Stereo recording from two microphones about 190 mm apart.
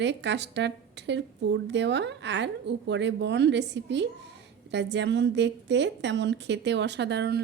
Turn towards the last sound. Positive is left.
turn(degrees=-60)  # may be behind; listen again after turning